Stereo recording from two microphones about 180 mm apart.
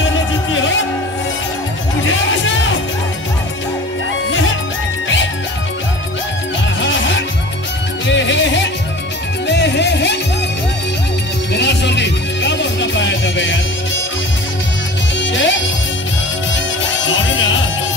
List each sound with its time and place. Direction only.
0.5 s music: 90° left
2.0 s music: 90° left
6.8 s music: 90° left
9.5 s music: 75° left (ahead or behind)
11.5 s music: 75° left (ahead or behind); by 13.6 s 90° left
15.1 s music: 90° left
17.0 s music: 90° left